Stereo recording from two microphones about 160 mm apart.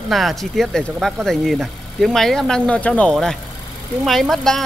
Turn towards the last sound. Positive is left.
turn(degrees=0)  # may be behind; listen again after turning